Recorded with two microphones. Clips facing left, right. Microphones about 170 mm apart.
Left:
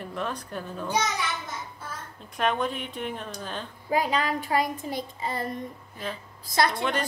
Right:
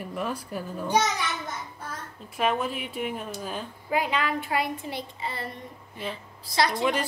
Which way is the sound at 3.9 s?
40° left (ahead or behind).